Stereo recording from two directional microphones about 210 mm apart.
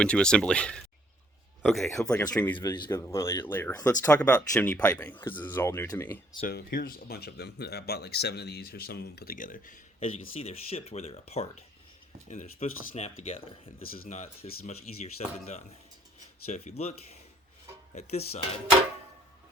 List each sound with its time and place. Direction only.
0.0 s speech: 5° left (ahead or behind)
6.4 s speech: 50° left (ahead or behind)
10.3 s speech: 30° left (ahead or behind)
14.0 s speech: 40° left (ahead or behind)